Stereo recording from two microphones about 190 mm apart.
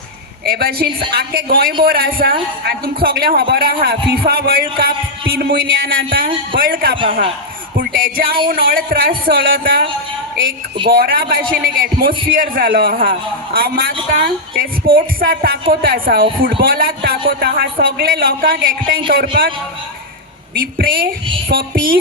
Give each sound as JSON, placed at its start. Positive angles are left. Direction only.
{"t": 0.4, "sound": "a man's voice", "side_deg": -55}
{"t": 10.8, "sound": "a man's voice", "side_deg": -50}
{"t": 20.6, "sound": "a man's voice", "side_deg": -50}